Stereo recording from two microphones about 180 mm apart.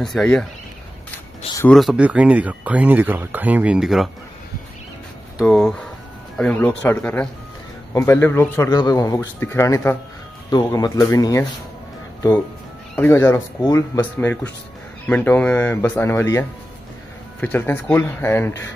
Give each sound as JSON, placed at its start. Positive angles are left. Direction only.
{"t": 0.0, "sound": "speech", "side_deg": 5}
{"t": 1.7, "sound": "speech", "side_deg": 0}
{"t": 5.4, "sound": "speech", "side_deg": 0}
{"t": 12.9, "sound": "speech", "side_deg": 10}